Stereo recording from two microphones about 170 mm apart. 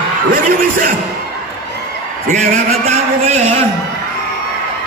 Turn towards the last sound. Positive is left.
turn(degrees=-40)  # may be behind; listen again after turning